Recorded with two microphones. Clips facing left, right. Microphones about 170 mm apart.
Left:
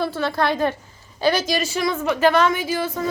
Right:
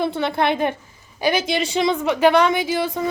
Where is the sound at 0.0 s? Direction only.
20° right (ahead or behind).